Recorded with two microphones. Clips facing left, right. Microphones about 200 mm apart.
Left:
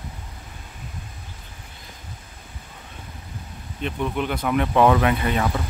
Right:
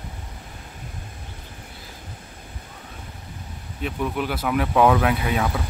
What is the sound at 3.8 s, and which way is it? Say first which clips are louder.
Speech: even; 5° right (ahead or behind).